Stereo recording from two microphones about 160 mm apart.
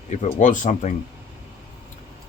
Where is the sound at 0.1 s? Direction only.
50° left (ahead or behind).